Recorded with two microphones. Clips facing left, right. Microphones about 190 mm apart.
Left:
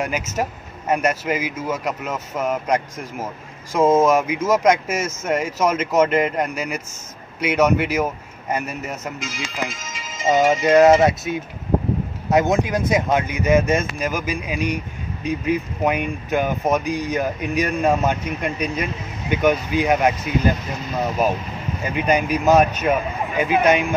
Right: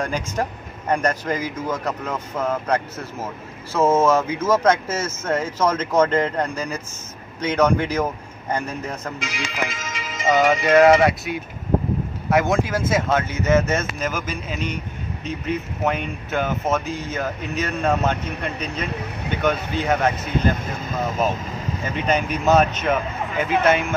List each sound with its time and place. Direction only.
0.0 s speech: 10° left (ahead or behind)
9.2 s speech: 70° right (ahead or behind)
10.6 s music: 20° left (ahead or behind)
12.3 s speech: 20° left (ahead or behind)
21.8 s speech: 10° left (ahead or behind)